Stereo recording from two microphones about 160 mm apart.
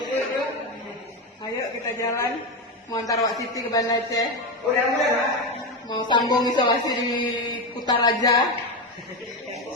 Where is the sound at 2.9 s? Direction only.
20° left (ahead or behind).